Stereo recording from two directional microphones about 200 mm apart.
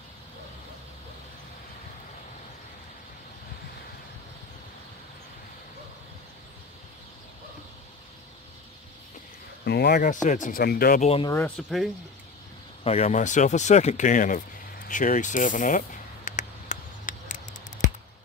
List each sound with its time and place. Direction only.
9.7 s speech: 55° left (ahead or behind)
11.0 s speech: 30° left (ahead or behind)
11.4 s speech: centre (ahead or behind)
12.8 s speech: 30° left (ahead or behind)
16.3 s a sound: 40° left (ahead or behind)